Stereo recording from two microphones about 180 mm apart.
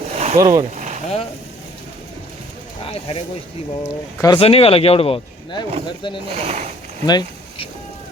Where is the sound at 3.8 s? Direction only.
15° left (ahead or behind).